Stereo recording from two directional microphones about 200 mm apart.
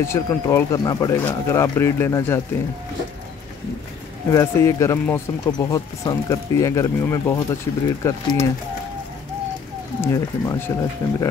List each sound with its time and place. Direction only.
0.0 s speech: 15° left (ahead or behind)
4.3 s speech: 15° left (ahead or behind)
9.9 s speech: 15° left (ahead or behind)